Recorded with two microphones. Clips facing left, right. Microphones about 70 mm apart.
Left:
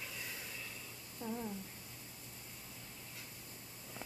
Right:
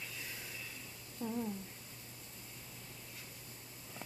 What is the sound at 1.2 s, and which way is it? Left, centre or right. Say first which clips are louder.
Speech: right 3 dB; centre.